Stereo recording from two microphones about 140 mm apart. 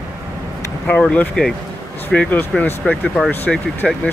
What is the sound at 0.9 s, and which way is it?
Speech, 10° left (ahead or behind).